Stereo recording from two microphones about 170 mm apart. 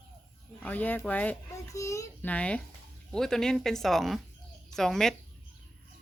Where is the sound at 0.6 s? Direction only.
10° left (ahead or behind).